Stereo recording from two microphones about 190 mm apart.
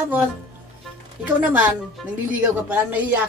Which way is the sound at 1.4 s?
10° right (ahead or behind).